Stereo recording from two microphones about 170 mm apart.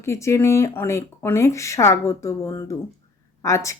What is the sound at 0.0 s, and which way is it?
A woman's voice, 15° left (ahead or behind).